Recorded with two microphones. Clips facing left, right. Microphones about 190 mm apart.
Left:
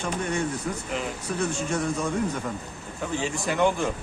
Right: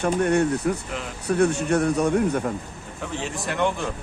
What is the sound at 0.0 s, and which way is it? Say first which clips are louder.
A man's voice: right 7 dB; 60° right (ahead or behind).